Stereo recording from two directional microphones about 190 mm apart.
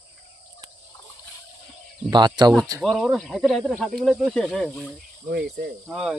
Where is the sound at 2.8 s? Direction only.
Centre (ahead or behind).